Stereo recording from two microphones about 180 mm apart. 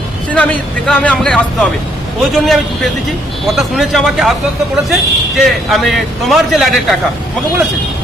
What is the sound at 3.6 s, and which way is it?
Speech, centre (ahead or behind).